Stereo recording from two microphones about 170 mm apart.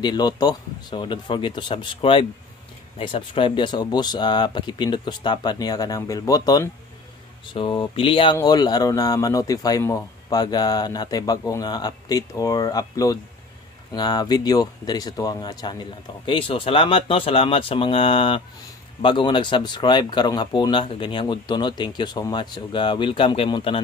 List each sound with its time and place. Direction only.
0.0 s speech: 25° left (ahead or behind)